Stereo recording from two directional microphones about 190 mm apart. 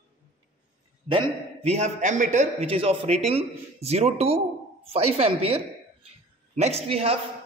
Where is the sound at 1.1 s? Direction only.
30° right (ahead or behind).